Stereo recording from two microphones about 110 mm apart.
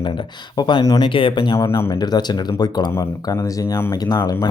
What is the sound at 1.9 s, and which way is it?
Speech, 40° left (ahead or behind).